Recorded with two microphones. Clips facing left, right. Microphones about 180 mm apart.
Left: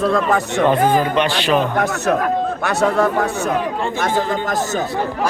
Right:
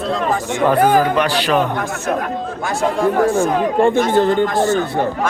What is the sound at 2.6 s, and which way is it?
Speech, 70° left (ahead or behind).